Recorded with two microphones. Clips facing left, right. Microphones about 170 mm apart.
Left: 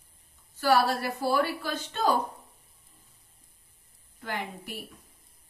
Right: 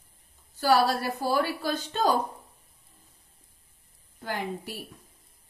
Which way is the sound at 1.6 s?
35° right (ahead or behind).